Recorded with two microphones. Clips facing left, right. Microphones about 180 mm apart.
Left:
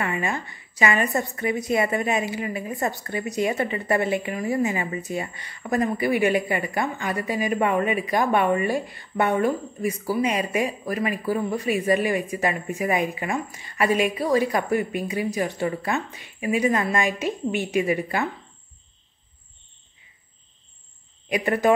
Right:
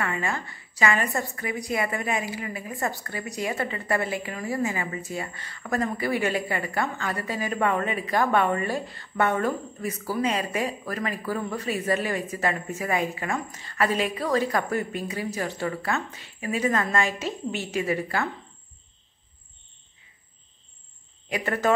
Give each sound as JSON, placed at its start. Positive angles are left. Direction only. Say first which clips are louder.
{"t": 0.0, "sound": "a woman's voice", "louder": "left 2 dB", "side_deg": 20}
{"t": 21.3, "sound": "a woman's voice", "louder": "left 4 dB", "side_deg": 15}